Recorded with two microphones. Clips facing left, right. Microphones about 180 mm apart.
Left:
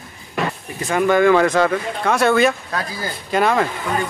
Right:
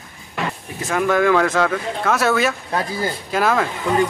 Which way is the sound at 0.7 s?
Centre (ahead or behind).